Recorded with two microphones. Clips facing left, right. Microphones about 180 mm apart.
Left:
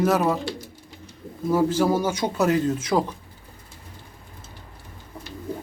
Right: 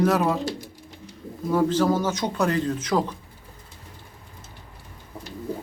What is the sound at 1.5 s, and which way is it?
A man's voice, 5° left (ahead or behind).